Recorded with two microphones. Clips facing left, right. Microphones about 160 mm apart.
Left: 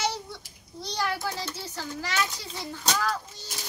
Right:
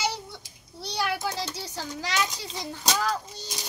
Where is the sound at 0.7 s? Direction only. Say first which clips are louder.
Right 1 dB; 10° right (ahead or behind).